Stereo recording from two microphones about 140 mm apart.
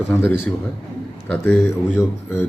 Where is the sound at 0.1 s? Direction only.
15° left (ahead or behind).